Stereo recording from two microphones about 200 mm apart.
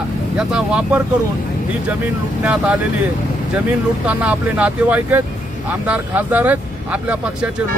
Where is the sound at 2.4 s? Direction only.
5° right (ahead or behind).